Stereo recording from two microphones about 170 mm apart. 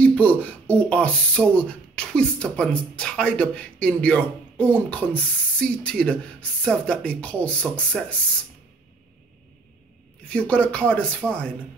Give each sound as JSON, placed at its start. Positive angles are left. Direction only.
{"t": 0.0, "sound": "speech", "side_deg": 10}
{"t": 10.2, "sound": "speech", "side_deg": 5}